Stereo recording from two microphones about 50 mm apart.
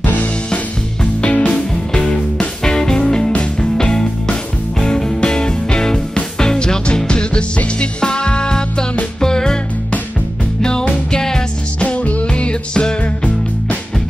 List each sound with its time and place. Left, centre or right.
0.0 s music: left
1.2 s music: left
10.6 s music: centre
11.8 s music: left